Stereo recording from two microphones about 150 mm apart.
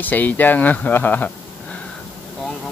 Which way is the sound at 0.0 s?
10° left (ahead or behind).